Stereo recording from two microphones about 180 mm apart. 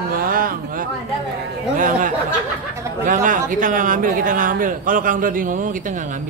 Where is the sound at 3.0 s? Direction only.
50° right (ahead or behind).